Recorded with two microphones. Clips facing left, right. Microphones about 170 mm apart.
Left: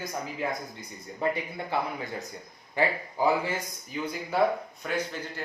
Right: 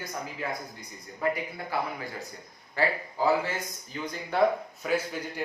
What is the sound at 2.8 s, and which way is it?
A man's voice, 15° left (ahead or behind).